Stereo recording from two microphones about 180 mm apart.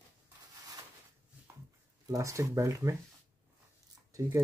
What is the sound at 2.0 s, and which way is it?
Speech, 15° right (ahead or behind).